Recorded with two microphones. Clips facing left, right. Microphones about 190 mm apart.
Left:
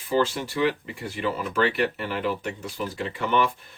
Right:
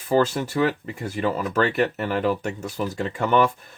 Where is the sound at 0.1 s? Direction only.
45° right (ahead or behind).